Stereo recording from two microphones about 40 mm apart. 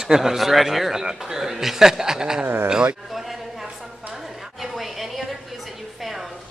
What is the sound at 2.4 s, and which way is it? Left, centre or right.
Speech, right.